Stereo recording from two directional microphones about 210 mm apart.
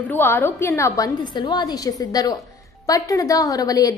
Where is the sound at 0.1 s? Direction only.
10° left (ahead or behind).